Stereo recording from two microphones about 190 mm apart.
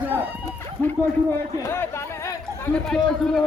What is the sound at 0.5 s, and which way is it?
Speech, 10° left (ahead or behind).